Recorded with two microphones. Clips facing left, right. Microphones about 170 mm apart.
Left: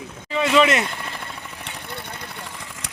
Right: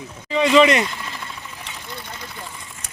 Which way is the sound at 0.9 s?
55° left (ahead or behind).